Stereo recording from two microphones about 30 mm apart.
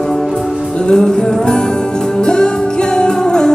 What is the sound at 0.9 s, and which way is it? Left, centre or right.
Music, left.